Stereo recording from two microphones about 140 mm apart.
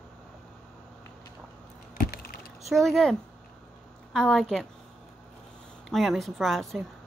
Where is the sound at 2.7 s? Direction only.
Centre (ahead or behind).